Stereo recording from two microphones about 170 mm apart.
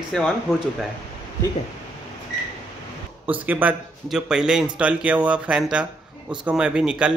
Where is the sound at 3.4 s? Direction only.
10° right (ahead or behind).